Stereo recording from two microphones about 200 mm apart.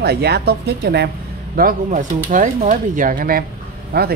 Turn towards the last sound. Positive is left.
turn(degrees=-50)  # may be behind; listen again after turning